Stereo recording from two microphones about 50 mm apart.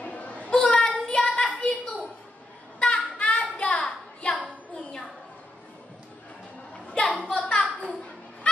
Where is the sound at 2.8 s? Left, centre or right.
Left.